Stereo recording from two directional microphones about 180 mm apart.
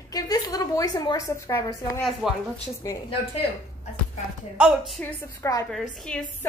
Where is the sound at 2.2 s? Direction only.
5° right (ahead or behind).